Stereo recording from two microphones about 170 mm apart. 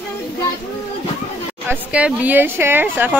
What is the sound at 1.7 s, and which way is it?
A woman's voice, 5° right (ahead or behind).